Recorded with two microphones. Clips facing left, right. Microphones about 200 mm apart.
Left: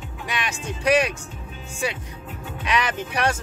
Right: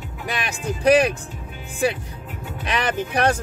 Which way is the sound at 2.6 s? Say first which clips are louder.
Right 1 dB; 35° right (ahead or behind).